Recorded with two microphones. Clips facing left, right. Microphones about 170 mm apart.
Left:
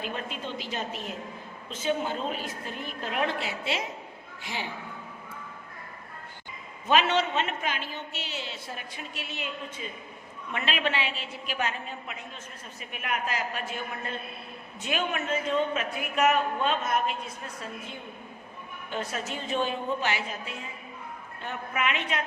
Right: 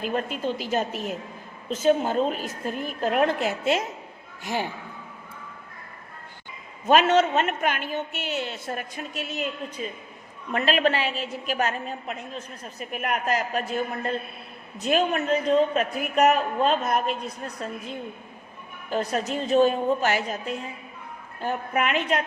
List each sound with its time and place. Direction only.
0.0 s a woman's voice: 45° right (ahead or behind)
6.8 s a woman's voice: 45° right (ahead or behind)